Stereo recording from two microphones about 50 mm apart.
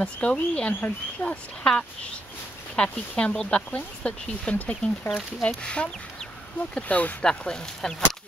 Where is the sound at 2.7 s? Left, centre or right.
Left.